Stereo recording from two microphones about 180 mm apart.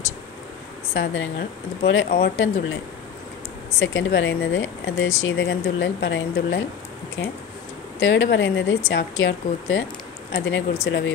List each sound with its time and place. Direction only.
0.9 s speech: 90° left
2.1 s speech: 75° left (ahead or behind)
3.8 s speech: 90° left
10.3 s speech: 70° left (ahead or behind)